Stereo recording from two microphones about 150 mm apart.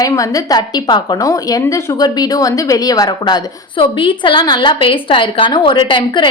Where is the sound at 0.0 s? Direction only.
20° left (ahead or behind).